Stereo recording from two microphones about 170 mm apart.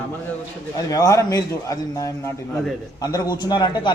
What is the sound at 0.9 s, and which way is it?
Speech, 20° left (ahead or behind).